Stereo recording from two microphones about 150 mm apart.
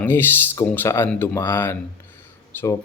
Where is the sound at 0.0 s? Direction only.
15° left (ahead or behind).